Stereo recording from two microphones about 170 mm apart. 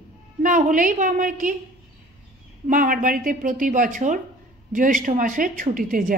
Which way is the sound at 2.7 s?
55° right (ahead or behind).